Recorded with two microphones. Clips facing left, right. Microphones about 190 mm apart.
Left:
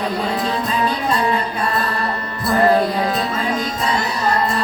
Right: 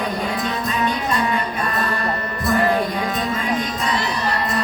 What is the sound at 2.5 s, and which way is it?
Music, 35° left (ahead or behind).